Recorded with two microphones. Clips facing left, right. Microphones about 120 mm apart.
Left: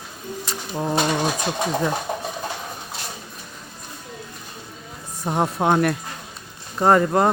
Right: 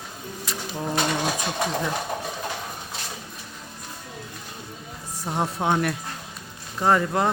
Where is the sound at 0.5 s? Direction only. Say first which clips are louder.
Right 1 dB; 30° left (ahead or behind).